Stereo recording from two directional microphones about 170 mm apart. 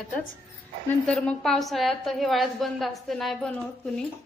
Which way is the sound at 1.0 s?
5° left (ahead or behind).